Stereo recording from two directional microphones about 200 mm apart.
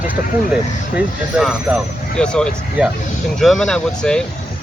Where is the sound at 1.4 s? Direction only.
Centre (ahead or behind).